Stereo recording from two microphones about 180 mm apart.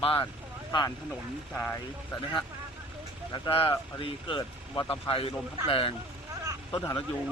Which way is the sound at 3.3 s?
25° left (ahead or behind).